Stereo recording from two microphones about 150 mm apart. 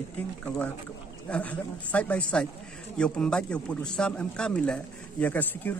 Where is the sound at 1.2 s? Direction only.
10° left (ahead or behind).